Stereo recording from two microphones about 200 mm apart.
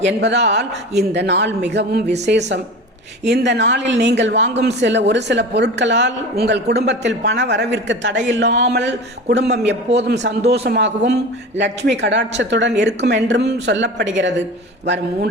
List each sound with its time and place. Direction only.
0.0 s speech: 60° right (ahead or behind)